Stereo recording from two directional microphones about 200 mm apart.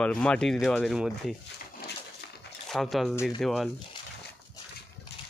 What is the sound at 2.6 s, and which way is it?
Speech, centre (ahead or behind).